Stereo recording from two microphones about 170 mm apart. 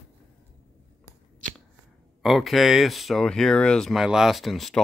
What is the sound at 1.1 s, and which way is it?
Shuffling cards, 15° left (ahead or behind).